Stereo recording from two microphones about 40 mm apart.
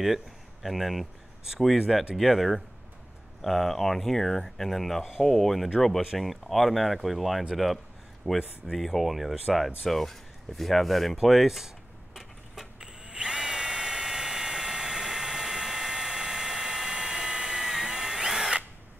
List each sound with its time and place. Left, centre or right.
0.0 s speech: centre
2.1 s speech: centre
8.2 s speech: left
8.7 s speech: centre
11.2 s a sound: centre
12.8 s drill: centre